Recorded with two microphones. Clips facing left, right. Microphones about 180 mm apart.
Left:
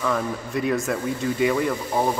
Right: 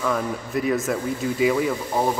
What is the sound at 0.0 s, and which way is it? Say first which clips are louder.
Speech: even; centre (ahead or behind).